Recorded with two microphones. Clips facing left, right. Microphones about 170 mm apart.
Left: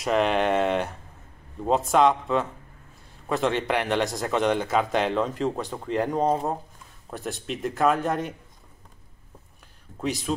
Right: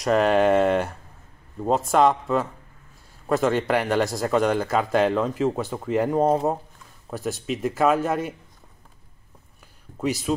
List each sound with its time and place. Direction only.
0.0 s a man's voice: centre (ahead or behind)
9.9 s a man's voice: centre (ahead or behind)